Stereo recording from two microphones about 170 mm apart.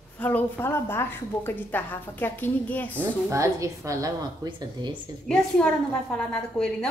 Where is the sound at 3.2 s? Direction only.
20° right (ahead or behind).